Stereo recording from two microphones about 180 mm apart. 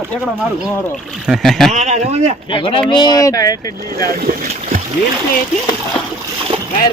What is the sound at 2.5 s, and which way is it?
Speech, 25° left (ahead or behind).